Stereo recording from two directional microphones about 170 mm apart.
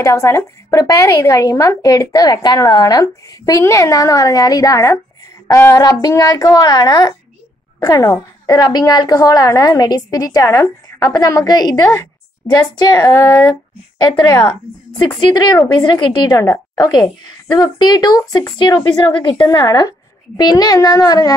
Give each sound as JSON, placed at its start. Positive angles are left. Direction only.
{"t": 0.0, "sound": "a woman's voice", "side_deg": 15}